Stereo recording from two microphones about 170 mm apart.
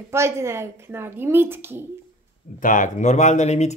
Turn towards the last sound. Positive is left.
turn(degrees=40)  # may be behind; listen again after turning